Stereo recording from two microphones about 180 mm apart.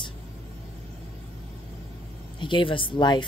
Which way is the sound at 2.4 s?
25° left (ahead or behind).